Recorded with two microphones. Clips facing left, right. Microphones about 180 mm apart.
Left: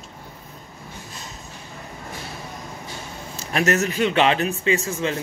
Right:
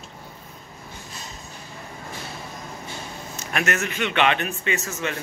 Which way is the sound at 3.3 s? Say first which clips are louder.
Left 5 dB; 35° left (ahead or behind).